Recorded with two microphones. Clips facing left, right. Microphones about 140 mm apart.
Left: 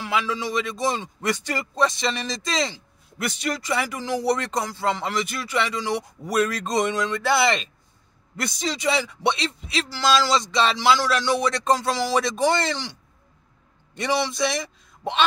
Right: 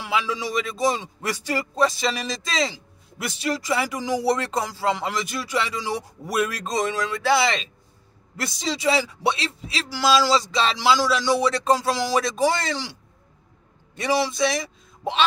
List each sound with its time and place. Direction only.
0.0 s speech: 10° right (ahead or behind)
8.4 s a sound: 5° right (ahead or behind)
13.9 s a man's voice: 5° right (ahead or behind)